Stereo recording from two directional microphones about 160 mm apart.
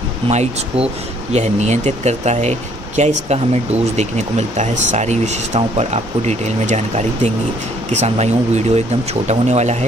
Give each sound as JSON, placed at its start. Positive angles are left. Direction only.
{"t": 0.3, "sound": "speech", "side_deg": -45}